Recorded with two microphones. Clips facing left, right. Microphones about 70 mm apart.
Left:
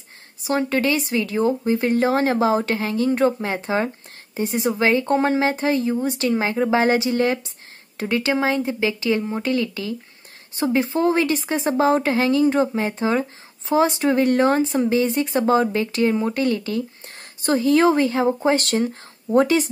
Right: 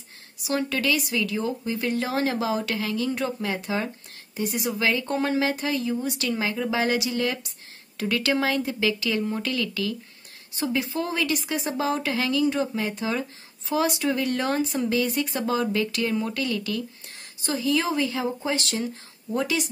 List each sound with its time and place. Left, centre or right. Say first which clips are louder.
0.4 s speech: left 5 dB; left
17.4 s speech: left 8 dB; left